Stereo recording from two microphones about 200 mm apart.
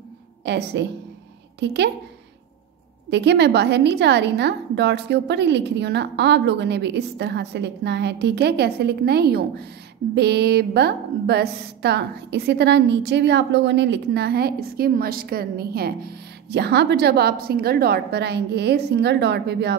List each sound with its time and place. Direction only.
0.5 s a woman's voice: 60° right (ahead or behind)
3.1 s a woman's voice: 60° right (ahead or behind)